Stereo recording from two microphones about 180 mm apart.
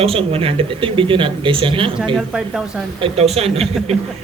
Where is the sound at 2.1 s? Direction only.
5° right (ahead or behind).